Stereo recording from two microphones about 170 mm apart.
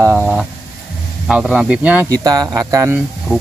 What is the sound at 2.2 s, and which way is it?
Speech, 20° right (ahead or behind).